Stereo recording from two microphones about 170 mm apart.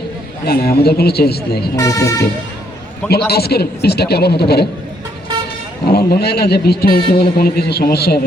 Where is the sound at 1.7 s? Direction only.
20° left (ahead or behind).